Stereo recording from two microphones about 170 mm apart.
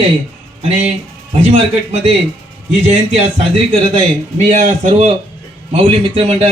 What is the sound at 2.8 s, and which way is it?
A man's voice, 40° right (ahead or behind).